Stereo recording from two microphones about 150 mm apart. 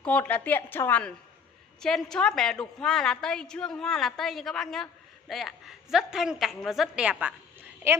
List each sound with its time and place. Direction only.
0.0 s a woman's voice: 10° left (ahead or behind); by 8.0 s 15° right (ahead or behind)